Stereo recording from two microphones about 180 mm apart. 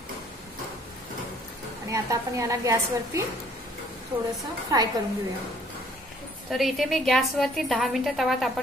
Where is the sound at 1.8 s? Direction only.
15° right (ahead or behind).